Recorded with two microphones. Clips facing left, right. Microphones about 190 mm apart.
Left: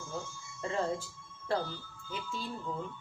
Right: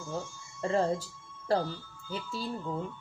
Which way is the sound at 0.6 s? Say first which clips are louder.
Right 5 dB; 40° right (ahead or behind).